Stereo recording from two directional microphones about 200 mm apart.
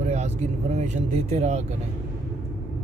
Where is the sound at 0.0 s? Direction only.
35° right (ahead or behind).